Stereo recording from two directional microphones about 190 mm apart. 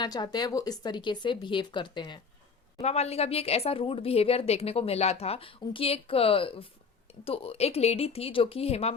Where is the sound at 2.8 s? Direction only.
35° left (ahead or behind).